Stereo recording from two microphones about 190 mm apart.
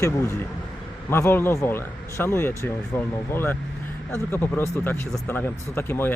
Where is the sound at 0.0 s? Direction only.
15° left (ahead or behind).